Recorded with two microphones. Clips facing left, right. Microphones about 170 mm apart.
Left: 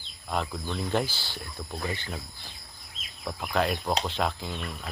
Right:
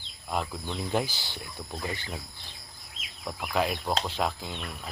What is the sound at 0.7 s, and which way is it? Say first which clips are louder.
Speech: left 1 dB; 15° right (ahead or behind).